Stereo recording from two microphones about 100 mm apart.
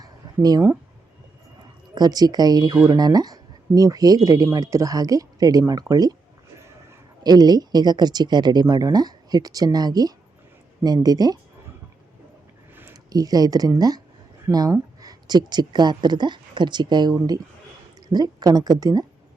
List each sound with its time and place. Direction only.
0.0 s a sound: 40° right (ahead or behind)
2.0 s speech: 40° right (ahead or behind)
7.2 s a woman's voice: 40° right (ahead or behind)
12.9 s a woman's voice: 40° right (ahead or behind)